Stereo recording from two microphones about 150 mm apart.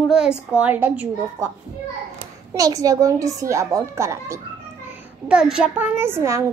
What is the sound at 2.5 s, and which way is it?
A child's voice, 25° right (ahead or behind).